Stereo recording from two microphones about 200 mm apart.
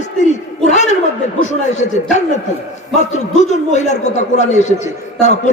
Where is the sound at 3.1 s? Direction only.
35° left (ahead or behind).